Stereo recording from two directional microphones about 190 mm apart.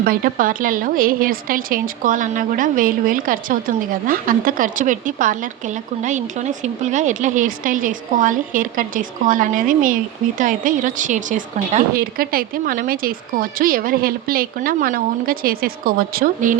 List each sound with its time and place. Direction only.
0.0 s speech: 50° right (ahead or behind)